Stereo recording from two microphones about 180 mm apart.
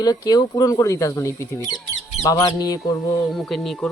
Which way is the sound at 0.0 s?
20° left (ahead or behind).